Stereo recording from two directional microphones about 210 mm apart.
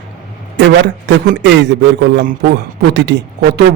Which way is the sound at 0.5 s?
55° right (ahead or behind).